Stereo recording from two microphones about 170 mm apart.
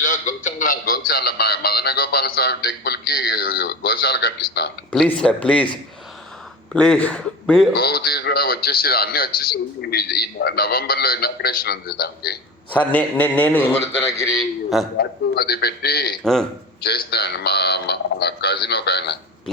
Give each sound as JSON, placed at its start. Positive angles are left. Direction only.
{"t": 0.0, "sound": "a sound", "side_deg": 50}
{"t": 4.9, "sound": "a man's voice", "side_deg": 5}
{"t": 6.7, "sound": "speech", "side_deg": 5}
{"t": 7.7, "sound": "speech", "side_deg": 65}
{"t": 12.7, "sound": "a man's voice", "side_deg": 10}
{"t": 14.9, "sound": "a man's voice", "side_deg": 65}
{"t": 16.2, "sound": "speech", "side_deg": 5}
{"t": 16.8, "sound": "radio", "side_deg": 70}